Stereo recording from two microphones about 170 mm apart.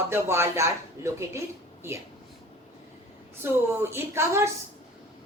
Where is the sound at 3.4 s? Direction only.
15° right (ahead or behind).